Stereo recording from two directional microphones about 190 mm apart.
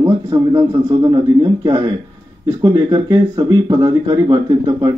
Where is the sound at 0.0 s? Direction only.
20° right (ahead or behind).